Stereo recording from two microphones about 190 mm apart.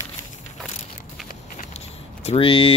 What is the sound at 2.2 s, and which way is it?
Speech, 30° left (ahead or behind).